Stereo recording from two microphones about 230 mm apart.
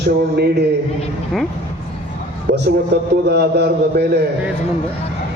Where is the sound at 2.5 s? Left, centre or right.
Right.